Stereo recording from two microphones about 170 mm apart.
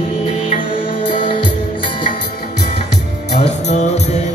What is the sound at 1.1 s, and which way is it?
Music, 30° left (ahead or behind).